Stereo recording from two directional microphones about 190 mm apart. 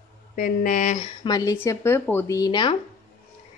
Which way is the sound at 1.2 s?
20° left (ahead or behind).